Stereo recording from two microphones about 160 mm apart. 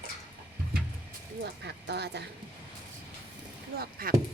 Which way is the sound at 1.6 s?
90° right.